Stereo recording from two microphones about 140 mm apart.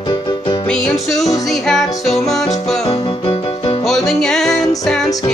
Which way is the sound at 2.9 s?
45° left (ahead or behind).